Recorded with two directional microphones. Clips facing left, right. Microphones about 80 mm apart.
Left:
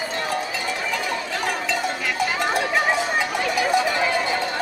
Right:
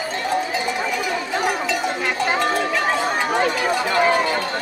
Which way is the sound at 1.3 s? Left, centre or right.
Centre.